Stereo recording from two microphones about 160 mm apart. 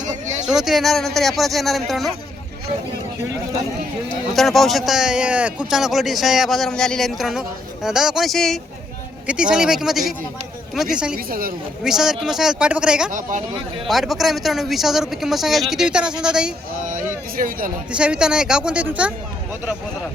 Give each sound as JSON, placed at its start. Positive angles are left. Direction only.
{"t": 0.4, "sound": "speech", "side_deg": -5}
{"t": 4.4, "sound": "speech", "side_deg": 0}
{"t": 11.3, "sound": "speech", "side_deg": -65}
{"t": 11.8, "sound": "speech", "side_deg": -5}
{"t": 13.1, "sound": "speech", "side_deg": -55}
{"t": 13.8, "sound": "speech", "side_deg": 0}
{"t": 16.9, "sound": "a sound", "side_deg": -60}
{"t": 17.9, "sound": "a woman's voice", "side_deg": -5}